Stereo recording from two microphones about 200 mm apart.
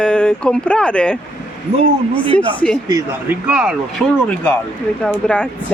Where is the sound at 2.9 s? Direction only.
15° right (ahead or behind).